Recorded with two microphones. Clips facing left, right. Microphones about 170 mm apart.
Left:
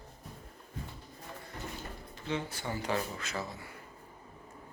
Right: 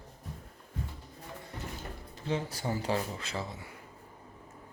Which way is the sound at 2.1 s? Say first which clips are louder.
Right 2 dB; 35° right (ahead or behind).